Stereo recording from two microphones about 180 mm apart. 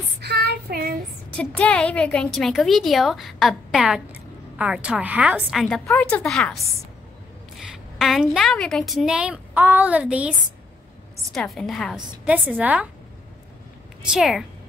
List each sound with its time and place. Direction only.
0.2 s child singing: 65° right (ahead or behind)
1.6 s a woman's voice: 5° left (ahead or behind)
7.7 s a woman's voice: centre (ahead or behind)
11.3 s a woman's voice: centre (ahead or behind)
14.1 s a woman's voice: centre (ahead or behind)